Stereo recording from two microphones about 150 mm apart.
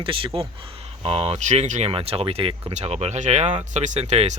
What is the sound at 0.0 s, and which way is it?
Speech, 35° right (ahead or behind).